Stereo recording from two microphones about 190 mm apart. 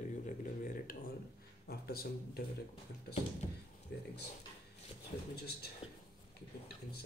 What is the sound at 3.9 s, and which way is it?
Speech, 65° left (ahead or behind).